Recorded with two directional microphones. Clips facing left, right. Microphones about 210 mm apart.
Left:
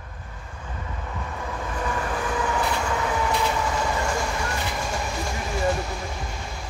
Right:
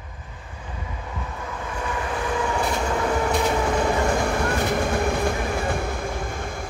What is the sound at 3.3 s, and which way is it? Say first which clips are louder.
Train: right 3 dB; 55° right (ahead or behind).